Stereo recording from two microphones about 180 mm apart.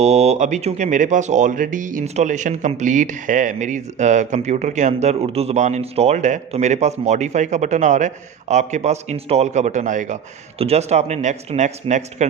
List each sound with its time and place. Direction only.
0.0 s speech: 40° right (ahead or behind)